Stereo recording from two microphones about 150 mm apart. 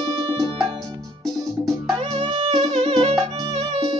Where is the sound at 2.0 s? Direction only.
40° right (ahead or behind).